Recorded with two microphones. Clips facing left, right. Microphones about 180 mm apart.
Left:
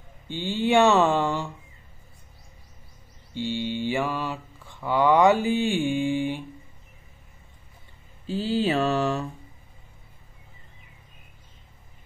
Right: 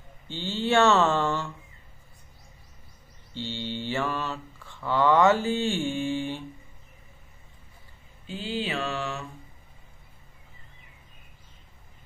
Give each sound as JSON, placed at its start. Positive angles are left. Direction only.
{"t": 0.3, "sound": "mantra", "side_deg": 15}
{"t": 3.3, "sound": "mantra", "side_deg": 15}
{"t": 8.3, "sound": "mantra", "side_deg": 40}